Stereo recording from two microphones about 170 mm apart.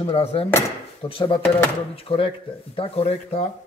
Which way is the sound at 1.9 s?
35° left (ahead or behind).